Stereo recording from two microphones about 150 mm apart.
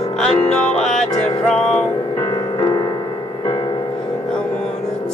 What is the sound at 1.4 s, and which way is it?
Music, 5° left (ahead or behind).